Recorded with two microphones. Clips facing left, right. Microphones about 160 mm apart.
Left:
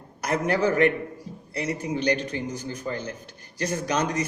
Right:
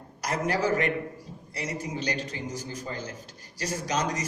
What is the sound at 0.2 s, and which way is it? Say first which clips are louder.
A man's voice: left 4 dB; 55° left (ahead or behind).